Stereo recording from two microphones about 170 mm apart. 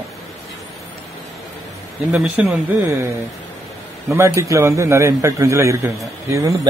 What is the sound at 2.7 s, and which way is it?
A man's voice, 15° right (ahead or behind).